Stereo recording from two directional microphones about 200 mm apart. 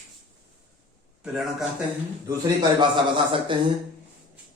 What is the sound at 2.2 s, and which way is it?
Speech, 20° right (ahead or behind).